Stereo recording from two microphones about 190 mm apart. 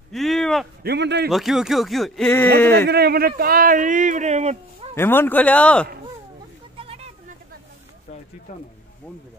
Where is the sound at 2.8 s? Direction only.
55° right (ahead or behind); by 4.9 s 35° right (ahead or behind).